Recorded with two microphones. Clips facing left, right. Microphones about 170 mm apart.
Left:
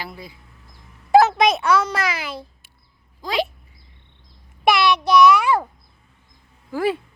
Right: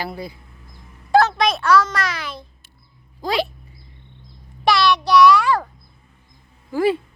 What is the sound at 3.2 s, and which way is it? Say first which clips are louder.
Speech: right 2 dB; 35° right (ahead or behind).